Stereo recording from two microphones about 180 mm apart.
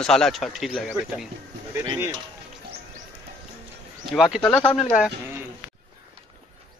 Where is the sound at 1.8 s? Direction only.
20° right (ahead or behind).